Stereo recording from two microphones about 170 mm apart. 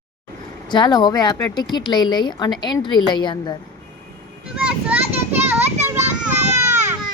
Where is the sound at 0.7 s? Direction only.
25° left (ahead or behind).